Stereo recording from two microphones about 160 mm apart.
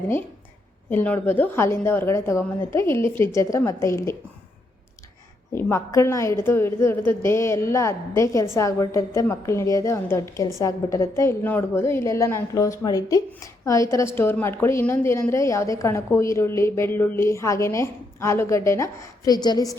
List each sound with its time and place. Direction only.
0.9 s a woman's voice: 10° left (ahead or behind)
5.5 s a woman's voice: 15° left (ahead or behind)